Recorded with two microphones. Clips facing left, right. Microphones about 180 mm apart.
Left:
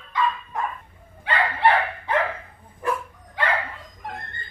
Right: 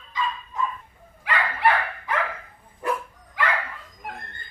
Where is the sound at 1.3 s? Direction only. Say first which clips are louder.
Left 2 dB; 30° left (ahead or behind).